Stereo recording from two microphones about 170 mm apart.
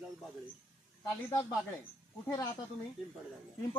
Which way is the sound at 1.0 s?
20° left (ahead or behind).